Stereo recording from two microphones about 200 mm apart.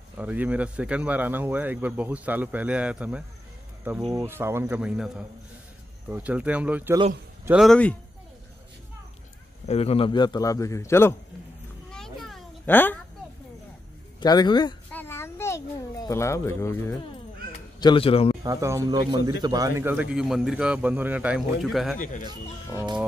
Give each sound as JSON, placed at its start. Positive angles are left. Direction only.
{"t": 0.2, "sound": "a man's voice", "side_deg": -10}
{"t": 9.7, "sound": "a man's voice", "side_deg": 30}
{"t": 11.9, "sound": "cat", "side_deg": 0}
{"t": 14.2, "sound": "a man's voice", "side_deg": 20}
{"t": 14.9, "sound": "a sound", "side_deg": 10}
{"t": 17.7, "sound": "speech", "side_deg": 25}
{"t": 18.4, "sound": "a man's voice", "side_deg": -15}
{"t": 21.9, "sound": "speech", "side_deg": 40}